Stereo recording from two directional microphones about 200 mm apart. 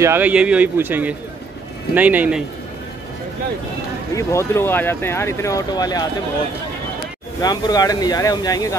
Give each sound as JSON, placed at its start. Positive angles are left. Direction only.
{"t": 0.0, "sound": "a man's voice", "side_deg": -10}
{"t": 4.1, "sound": "speech", "side_deg": 15}
{"t": 7.4, "sound": "speech", "side_deg": 20}